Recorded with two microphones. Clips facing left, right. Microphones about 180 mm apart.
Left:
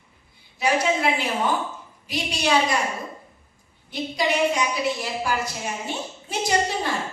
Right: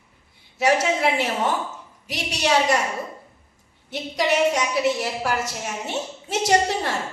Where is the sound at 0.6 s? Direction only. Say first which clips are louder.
Right 2 dB; 80° right.